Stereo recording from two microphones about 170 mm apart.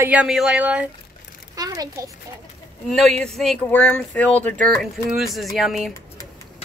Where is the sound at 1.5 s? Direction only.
20° right (ahead or behind).